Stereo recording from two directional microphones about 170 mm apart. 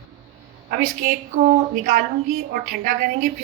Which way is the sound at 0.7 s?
50° right (ahead or behind).